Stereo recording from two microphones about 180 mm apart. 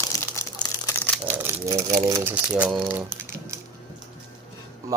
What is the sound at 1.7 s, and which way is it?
Speech, 15° right (ahead or behind).